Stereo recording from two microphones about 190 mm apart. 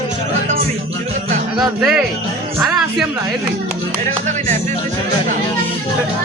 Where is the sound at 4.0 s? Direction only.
40° right (ahead or behind).